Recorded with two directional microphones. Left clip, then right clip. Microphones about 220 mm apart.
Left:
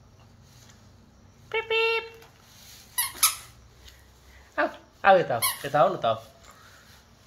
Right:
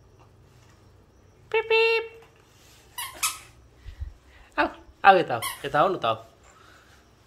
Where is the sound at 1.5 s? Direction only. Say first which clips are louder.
Right 4 dB; 20° right (ahead or behind).